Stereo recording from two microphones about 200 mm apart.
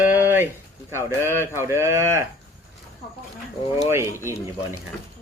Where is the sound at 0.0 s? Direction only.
10° right (ahead or behind).